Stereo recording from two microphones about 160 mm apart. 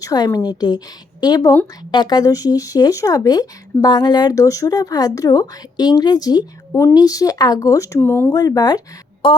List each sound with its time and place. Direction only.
0.0 s speech: 20° left (ahead or behind)